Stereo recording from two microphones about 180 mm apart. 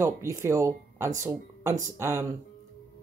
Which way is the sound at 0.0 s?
15° right (ahead or behind).